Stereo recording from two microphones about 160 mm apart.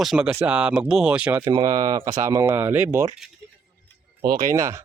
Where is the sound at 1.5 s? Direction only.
25° right (ahead or behind).